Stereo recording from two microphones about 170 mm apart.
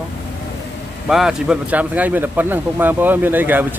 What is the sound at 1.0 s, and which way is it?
Speech, 5° right (ahead or behind).